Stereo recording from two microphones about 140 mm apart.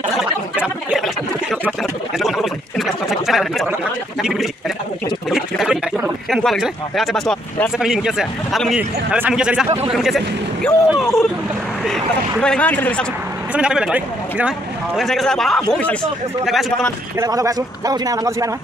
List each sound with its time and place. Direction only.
0.2 s a sound: 5° right (ahead or behind)
4.2 s a man's voice: centre (ahead or behind)
5.3 s a sound: 5° right (ahead or behind)
7.8 s a man's voice: 5° right (ahead or behind); by 13.0 s 10° left (ahead or behind)
13.5 s a man's voice: 5° right (ahead or behind)
17.2 s a man's voice: 25° right (ahead or behind)